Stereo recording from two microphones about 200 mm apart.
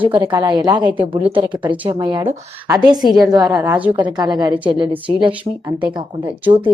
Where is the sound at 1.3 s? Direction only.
25° right (ahead or behind).